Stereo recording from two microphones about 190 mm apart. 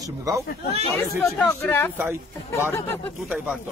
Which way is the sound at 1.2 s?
5° left (ahead or behind).